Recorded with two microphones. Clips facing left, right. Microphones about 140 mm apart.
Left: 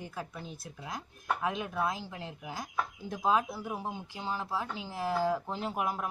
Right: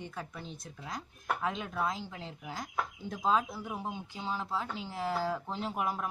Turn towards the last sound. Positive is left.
turn(degrees=5)  # may be behind; listen again after turning